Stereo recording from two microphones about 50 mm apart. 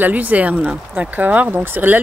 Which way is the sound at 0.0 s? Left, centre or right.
Right.